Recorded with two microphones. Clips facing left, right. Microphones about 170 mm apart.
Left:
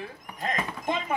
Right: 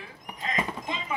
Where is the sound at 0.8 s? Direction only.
50° left (ahead or behind).